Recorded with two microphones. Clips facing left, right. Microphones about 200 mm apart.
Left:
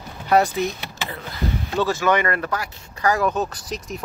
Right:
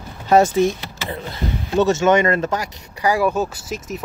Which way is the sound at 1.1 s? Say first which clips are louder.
Right 2 dB; 25° right (ahead or behind).